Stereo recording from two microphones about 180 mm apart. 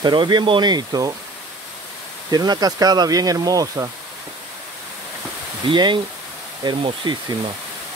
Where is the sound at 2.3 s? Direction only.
20° right (ahead or behind).